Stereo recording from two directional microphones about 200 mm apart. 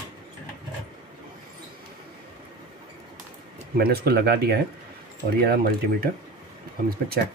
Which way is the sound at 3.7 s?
50° right (ahead or behind).